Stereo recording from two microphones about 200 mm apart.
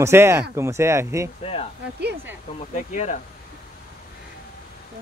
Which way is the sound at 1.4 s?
30° left (ahead or behind).